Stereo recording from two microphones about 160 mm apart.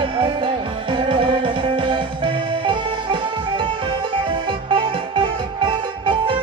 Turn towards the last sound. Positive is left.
turn(degrees=-30)  # may be behind; listen again after turning